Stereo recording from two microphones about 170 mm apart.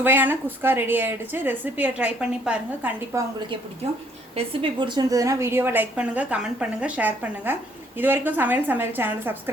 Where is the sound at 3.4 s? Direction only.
30° right (ahead or behind).